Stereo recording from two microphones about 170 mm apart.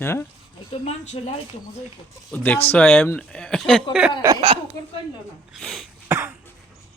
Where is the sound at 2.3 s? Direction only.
10° left (ahead or behind).